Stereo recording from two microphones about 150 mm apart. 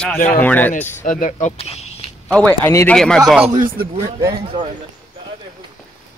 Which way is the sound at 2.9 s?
5° left (ahead or behind).